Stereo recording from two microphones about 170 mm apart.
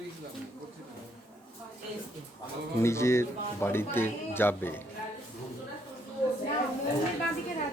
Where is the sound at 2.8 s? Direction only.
15° left (ahead or behind).